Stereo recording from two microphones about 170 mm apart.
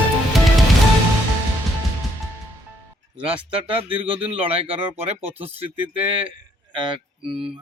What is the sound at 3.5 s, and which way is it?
Speech, 30° right (ahead or behind).